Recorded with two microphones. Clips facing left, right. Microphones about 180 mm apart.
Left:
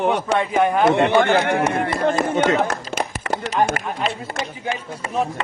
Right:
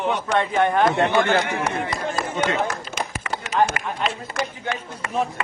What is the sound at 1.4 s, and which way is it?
A man's voice, 60° left (ahead or behind).